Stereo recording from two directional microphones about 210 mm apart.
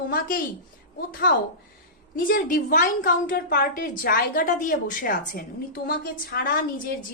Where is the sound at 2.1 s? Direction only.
45° left (ahead or behind).